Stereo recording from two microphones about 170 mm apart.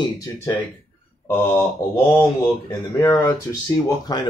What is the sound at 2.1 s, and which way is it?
Speech, 15° left (ahead or behind).